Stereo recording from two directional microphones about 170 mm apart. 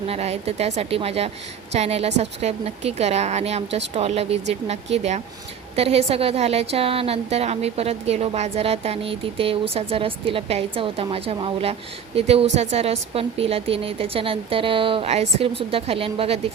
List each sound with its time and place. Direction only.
0.1 s a woman's voice: 35° right (ahead or behind)